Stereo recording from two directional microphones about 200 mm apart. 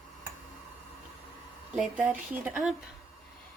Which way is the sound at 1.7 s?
5° right (ahead or behind).